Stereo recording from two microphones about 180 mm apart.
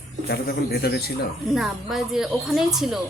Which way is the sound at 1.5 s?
Centre (ahead or behind).